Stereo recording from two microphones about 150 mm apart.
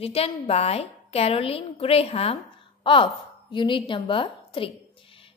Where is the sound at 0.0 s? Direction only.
40° left (ahead or behind).